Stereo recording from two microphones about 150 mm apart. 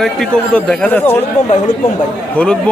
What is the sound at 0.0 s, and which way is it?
A man's voice, 5° left (ahead or behind).